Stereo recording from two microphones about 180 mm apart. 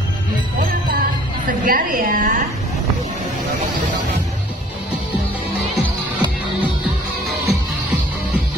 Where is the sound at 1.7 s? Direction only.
50° right (ahead or behind).